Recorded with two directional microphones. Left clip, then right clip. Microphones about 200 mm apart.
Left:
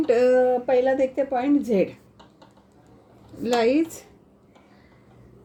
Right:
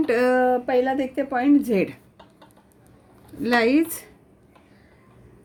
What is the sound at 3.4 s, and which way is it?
Speech, 60° right (ahead or behind).